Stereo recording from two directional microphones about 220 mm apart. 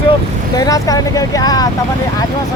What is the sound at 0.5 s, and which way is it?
Speech, 15° left (ahead or behind).